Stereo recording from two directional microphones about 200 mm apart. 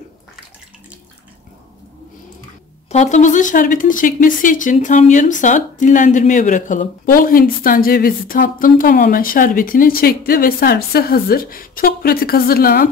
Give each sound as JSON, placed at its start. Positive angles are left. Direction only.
{"t": 2.9, "sound": "speech", "side_deg": 35}